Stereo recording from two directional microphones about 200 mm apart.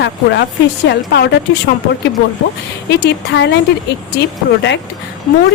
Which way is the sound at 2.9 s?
55° left (ahead or behind).